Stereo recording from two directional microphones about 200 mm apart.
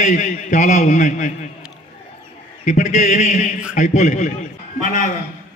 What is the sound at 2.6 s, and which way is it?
A man's voice, 35° left (ahead or behind).